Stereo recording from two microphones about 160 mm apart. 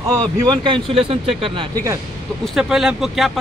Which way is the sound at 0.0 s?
20° right (ahead or behind).